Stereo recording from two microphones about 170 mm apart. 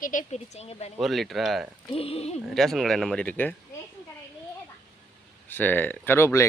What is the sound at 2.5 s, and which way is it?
Speech, centre (ahead or behind).